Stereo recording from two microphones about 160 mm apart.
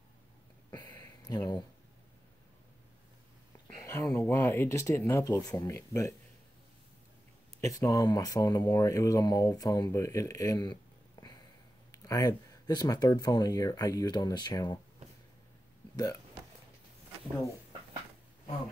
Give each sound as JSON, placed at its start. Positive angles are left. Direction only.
{"t": 0.7, "sound": "a sound", "side_deg": 25}
{"t": 3.6, "sound": "speech", "side_deg": 15}
{"t": 7.6, "sound": "speech", "side_deg": 20}